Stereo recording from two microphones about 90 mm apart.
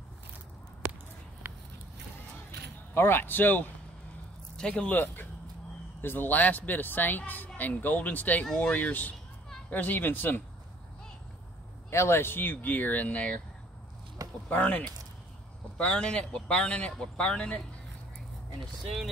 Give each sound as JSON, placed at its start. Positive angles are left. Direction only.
{"t": 2.9, "sound": "a woman's voice", "side_deg": 25}
{"t": 11.9, "sound": "a woman's voice", "side_deg": 30}
{"t": 14.5, "sound": "speech", "side_deg": 15}